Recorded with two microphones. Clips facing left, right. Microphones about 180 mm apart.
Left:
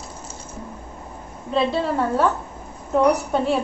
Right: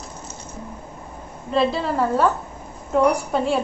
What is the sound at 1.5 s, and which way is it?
A woman's voice, centre (ahead or behind).